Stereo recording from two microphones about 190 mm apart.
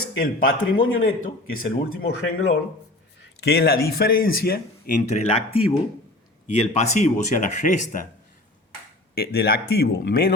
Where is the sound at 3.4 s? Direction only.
55° left (ahead or behind).